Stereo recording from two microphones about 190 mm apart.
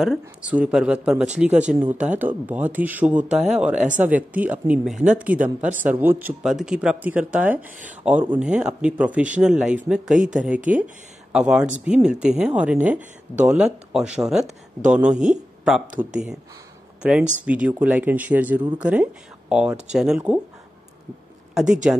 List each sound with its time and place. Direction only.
0.0 s speech: 5° right (ahead or behind)
5.4 s speech: 45° right (ahead or behind)
5.8 s speech: 10° right (ahead or behind)
17.0 s speech: 5° right (ahead or behind)
21.9 s speech: 5° right (ahead or behind)